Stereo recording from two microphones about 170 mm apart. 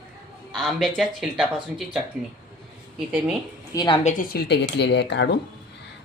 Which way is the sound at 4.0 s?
45° left (ahead or behind).